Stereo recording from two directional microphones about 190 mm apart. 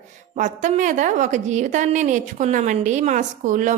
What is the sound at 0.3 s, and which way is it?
A woman's voice, 40° right (ahead or behind).